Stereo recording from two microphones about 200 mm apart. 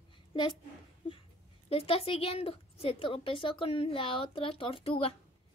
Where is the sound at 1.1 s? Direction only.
30° left (ahead or behind).